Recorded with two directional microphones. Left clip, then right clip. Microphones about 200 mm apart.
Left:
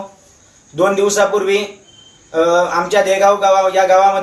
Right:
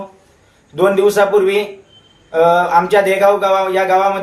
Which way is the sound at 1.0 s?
15° right (ahead or behind).